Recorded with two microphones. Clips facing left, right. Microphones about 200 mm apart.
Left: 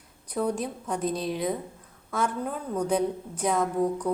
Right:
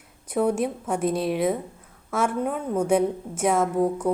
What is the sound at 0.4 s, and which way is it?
Speech, 25° right (ahead or behind).